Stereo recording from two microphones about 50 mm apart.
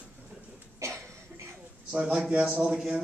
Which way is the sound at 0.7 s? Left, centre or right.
Right.